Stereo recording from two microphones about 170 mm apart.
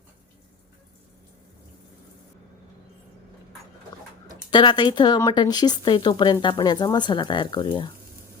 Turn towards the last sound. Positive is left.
turn(degrees=30)  # may be behind; listen again after turning